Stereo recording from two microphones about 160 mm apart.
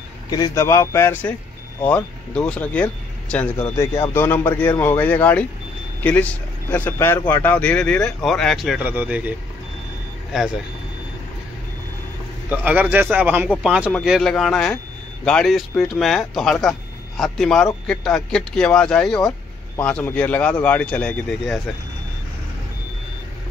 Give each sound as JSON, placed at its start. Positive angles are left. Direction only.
{"t": 0.3, "sound": "speech", "side_deg": 20}
{"t": 12.4, "sound": "speech", "side_deg": -10}